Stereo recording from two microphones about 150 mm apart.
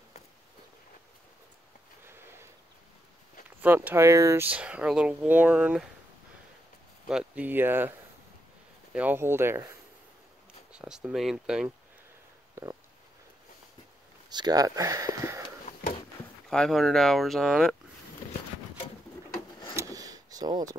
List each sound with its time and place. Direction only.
3.4 s speech: 10° right (ahead or behind)
7.1 s speech: 5° right (ahead or behind)
8.9 s speech: 10° right (ahead or behind)
10.7 s speech: 5° right (ahead or behind)
12.6 s stomach rumble: 20° right (ahead or behind)
14.3 s speech: 25° right (ahead or behind)
16.4 s speech: 5° left (ahead or behind)
19.7 s a sound: 20° right (ahead or behind)